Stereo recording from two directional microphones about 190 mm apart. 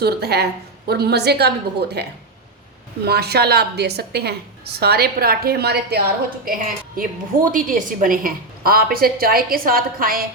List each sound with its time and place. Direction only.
0.0 s a woman's voice: 55° right (ahead or behind)